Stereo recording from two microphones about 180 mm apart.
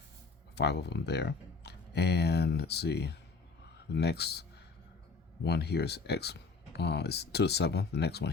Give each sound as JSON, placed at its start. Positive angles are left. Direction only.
{"t": 0.5, "sound": "speech", "side_deg": 70}